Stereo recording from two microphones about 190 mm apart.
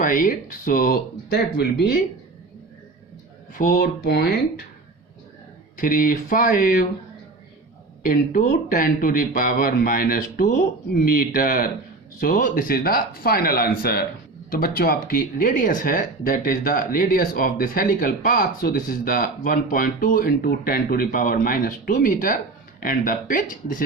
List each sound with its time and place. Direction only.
0.0 s speech: 45° left (ahead or behind)
3.5 s speech: 45° left (ahead or behind)
5.7 s speech: 45° left (ahead or behind)
8.0 s speech: 50° left (ahead or behind)